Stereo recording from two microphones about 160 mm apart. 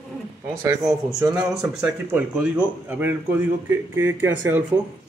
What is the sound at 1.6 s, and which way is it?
Speech, 10° right (ahead or behind).